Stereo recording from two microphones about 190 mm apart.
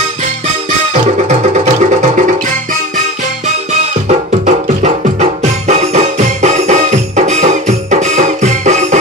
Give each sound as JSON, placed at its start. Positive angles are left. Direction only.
{"t": 0.9, "sound": "music", "side_deg": -35}
{"t": 3.4, "sound": "music", "side_deg": -35}